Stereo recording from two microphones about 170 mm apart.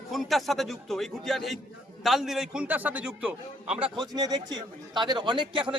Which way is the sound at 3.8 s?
25° right (ahead or behind).